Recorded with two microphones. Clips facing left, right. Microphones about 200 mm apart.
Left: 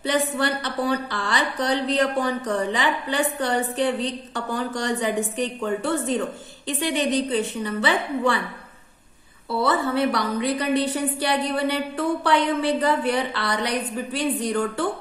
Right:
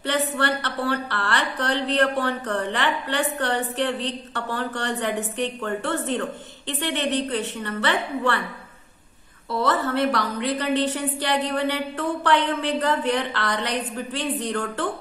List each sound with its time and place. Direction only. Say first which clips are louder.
0.0 s a woman's voice: left 1 dB; 10° left (ahead or behind)
9.5 s a woman's voice: left 1 dB; 10° left (ahead or behind)